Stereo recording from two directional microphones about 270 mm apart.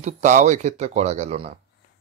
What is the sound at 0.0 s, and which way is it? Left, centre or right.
Speech, right.